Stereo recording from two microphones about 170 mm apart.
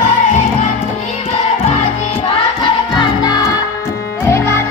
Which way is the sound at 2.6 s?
25° left (ahead or behind).